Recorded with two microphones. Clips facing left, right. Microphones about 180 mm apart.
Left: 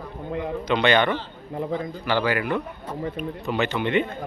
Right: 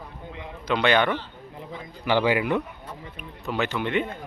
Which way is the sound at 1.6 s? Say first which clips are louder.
Left 12 dB; 55° left (ahead or behind).